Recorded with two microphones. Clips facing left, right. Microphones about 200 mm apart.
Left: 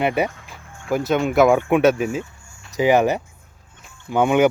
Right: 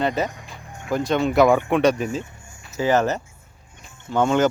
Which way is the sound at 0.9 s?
5° left (ahead or behind).